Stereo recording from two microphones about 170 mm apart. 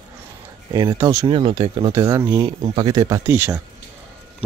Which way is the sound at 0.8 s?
20° right (ahead or behind).